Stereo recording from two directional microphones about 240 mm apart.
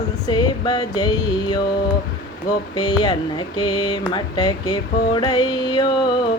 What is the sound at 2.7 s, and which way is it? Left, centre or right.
Mantra, centre.